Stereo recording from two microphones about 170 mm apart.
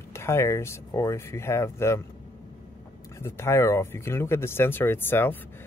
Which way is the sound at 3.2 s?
15° left (ahead or behind).